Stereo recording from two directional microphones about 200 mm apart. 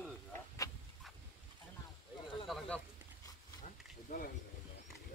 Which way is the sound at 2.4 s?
Centre (ahead or behind).